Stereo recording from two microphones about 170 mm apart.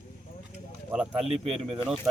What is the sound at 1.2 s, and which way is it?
Speech, 40° right (ahead or behind).